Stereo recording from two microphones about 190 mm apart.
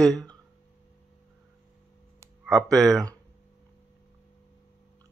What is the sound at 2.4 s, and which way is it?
Speech, 5° left (ahead or behind).